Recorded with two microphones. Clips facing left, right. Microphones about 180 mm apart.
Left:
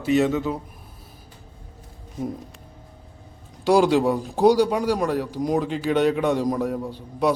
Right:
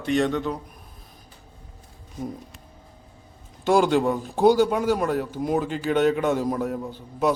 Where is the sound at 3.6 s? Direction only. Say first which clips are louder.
Left 2 dB; centre (ahead or behind).